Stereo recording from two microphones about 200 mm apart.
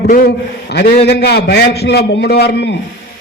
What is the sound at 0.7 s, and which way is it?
A man's voice, 55° left (ahead or behind).